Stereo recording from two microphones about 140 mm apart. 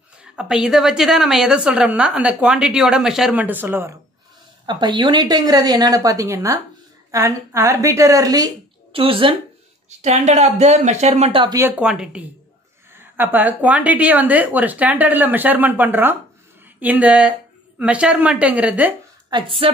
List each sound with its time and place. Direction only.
0.2 s a woman's voice: 5° right (ahead or behind)
4.6 s a woman's voice: 30° right (ahead or behind)
8.9 s speech: 40° right (ahead or behind)
9.8 s speech: 55° right (ahead or behind)
11.8 s a woman's voice: 5° right (ahead or behind)
19.3 s speech: 40° right (ahead or behind)